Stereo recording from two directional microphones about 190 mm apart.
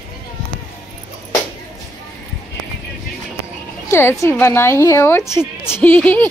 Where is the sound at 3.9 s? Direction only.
15° left (ahead or behind).